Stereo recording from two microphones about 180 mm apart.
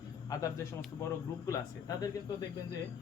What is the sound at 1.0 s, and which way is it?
A man's voice, 20° left (ahead or behind).